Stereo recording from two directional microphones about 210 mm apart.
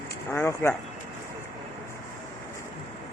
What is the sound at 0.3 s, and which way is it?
Speech, 10° left (ahead or behind).